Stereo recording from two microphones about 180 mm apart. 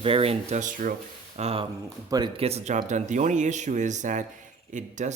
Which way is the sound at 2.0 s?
20° right (ahead or behind).